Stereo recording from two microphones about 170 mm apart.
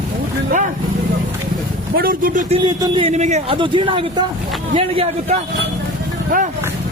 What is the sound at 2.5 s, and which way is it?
Speech, 25° right (ahead or behind).